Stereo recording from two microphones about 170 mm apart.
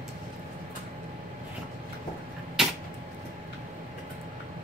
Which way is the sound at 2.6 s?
5° right (ahead or behind).